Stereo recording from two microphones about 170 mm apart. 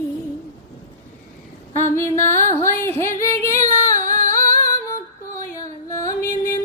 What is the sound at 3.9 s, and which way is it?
Singing, 45° right (ahead or behind).